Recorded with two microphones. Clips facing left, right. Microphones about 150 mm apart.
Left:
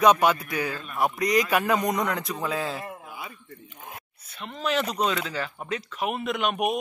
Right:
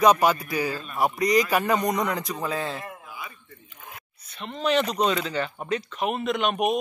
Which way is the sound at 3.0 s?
45° left (ahead or behind).